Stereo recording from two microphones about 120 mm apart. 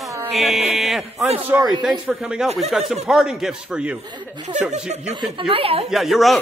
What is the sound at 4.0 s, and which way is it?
Speech, 35° right (ahead or behind).